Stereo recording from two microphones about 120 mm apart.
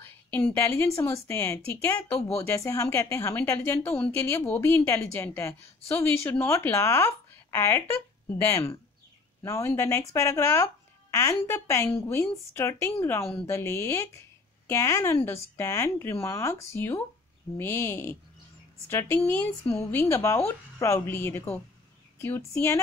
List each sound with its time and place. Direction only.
0.0 s a woman's voice: 15° left (ahead or behind)